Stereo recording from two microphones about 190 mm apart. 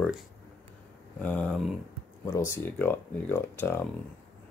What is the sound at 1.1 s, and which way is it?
Speech, 5° left (ahead or behind).